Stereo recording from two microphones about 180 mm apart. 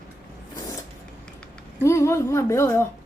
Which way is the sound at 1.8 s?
15° left (ahead or behind).